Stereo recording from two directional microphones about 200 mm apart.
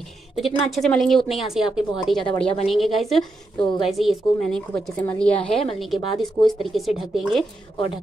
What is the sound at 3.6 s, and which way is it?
Speech, 25° left (ahead or behind).